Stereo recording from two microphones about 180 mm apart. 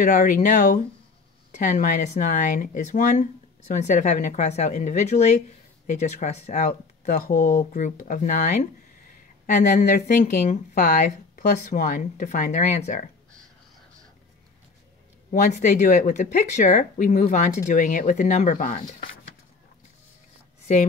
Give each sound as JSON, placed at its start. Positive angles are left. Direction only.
{"t": 0.0, "sound": "speech", "side_deg": 45}
{"t": 6.7, "sound": "speech", "side_deg": 55}
{"t": 9.5, "sound": "speech", "side_deg": 40}
{"t": 15.3, "sound": "speech", "side_deg": 40}